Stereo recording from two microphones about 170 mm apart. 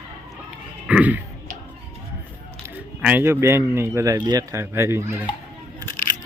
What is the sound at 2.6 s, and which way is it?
Speech, 10° right (ahead or behind).